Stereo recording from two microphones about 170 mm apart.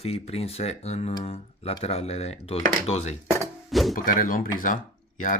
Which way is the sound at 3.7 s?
Centre (ahead or behind).